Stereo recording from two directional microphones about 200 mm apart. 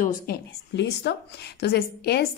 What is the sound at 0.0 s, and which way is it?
A woman's voice, 55° left (ahead or behind).